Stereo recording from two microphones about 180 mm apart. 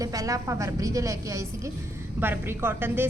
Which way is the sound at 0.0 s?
20° right (ahead or behind).